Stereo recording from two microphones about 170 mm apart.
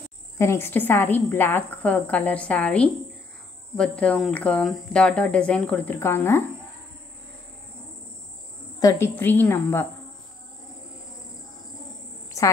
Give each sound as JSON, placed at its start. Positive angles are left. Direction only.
{"t": 0.4, "sound": "a woman's voice", "side_deg": 15}
{"t": 8.7, "sound": "a woman's voice", "side_deg": 20}
{"t": 12.4, "sound": "a sound", "side_deg": 20}